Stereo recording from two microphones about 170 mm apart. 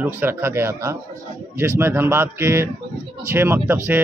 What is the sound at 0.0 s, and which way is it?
Speech, 10° right (ahead or behind).